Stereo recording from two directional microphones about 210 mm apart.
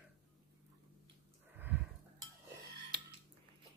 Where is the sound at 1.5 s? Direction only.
10° right (ahead or behind).